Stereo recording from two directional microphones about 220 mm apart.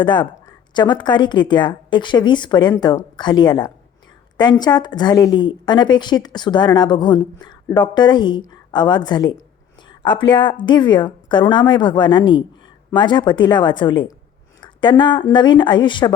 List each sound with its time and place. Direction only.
0.0 s a woman's voice: 20° left (ahead or behind)
14.6 s a sound: 20° left (ahead or behind)
15.3 s a woman's voice: 20° left (ahead or behind)